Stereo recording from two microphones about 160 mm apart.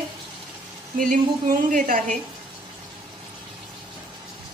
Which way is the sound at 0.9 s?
60° right (ahead or behind).